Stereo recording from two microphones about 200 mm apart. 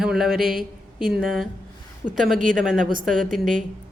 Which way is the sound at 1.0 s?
Centre (ahead or behind).